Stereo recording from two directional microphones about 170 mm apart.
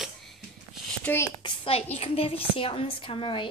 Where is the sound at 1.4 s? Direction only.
35° left (ahead or behind).